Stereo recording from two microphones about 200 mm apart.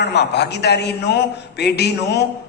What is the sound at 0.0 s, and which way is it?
A man's voice, 55° left (ahead or behind).